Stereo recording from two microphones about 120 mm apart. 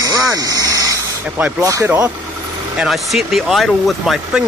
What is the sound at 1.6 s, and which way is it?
Speech, 25° right (ahead or behind).